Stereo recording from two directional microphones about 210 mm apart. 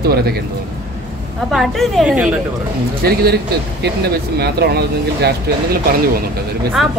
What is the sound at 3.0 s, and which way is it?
Speech, 50° right (ahead or behind).